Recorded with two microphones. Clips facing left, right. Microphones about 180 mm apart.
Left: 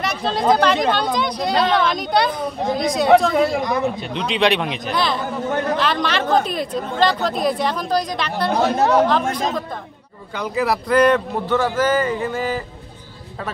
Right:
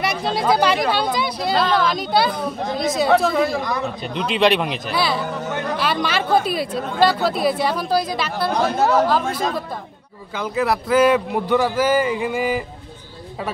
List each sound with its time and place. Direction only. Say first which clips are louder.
0.0 s speech: left 1 dB; 10° right (ahead or behind)
3.3 s speech: left 2 dB; 20° left (ahead or behind)
4.0 s speech: right 1 dB; centre (ahead or behind)